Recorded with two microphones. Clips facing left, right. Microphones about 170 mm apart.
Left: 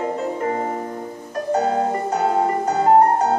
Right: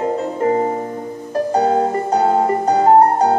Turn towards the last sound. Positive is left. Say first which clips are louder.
# right 3 dB
turn(degrees=-35)  # may be behind; listen again after turning